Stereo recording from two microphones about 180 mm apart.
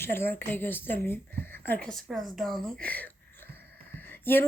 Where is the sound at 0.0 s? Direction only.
15° left (ahead or behind).